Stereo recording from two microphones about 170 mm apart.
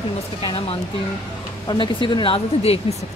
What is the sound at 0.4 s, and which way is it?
Speech, 30° left (ahead or behind).